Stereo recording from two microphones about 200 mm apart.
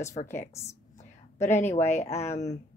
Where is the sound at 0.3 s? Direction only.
15° left (ahead or behind).